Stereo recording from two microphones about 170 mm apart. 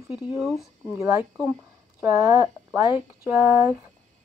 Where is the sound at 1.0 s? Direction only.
15° right (ahead or behind).